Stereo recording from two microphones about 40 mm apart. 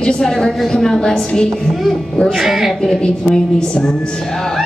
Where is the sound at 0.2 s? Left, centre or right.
Centre.